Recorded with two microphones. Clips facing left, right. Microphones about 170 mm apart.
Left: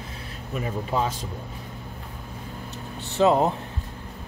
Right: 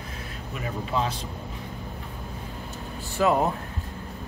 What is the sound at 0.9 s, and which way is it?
Speech, 40° left (ahead or behind).